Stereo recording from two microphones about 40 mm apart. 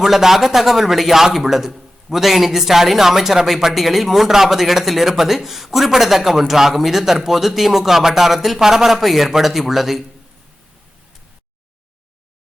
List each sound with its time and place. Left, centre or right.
0.0 s a man's voice: centre